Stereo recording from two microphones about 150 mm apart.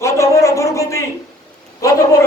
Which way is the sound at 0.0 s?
20° left (ahead or behind).